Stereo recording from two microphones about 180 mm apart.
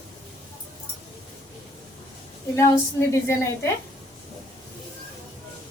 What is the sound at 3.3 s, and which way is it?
Speech, 15° left (ahead or behind).